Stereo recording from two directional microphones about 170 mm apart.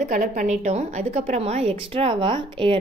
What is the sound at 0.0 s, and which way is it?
A woman's voice, 50° right (ahead or behind).